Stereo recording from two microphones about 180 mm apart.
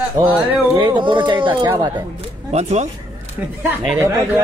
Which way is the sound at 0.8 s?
25° right (ahead or behind).